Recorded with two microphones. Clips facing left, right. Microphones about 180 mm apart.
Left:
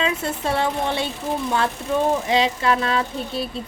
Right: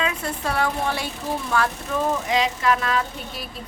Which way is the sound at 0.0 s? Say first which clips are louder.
Left 3 dB; 25° left (ahead or behind).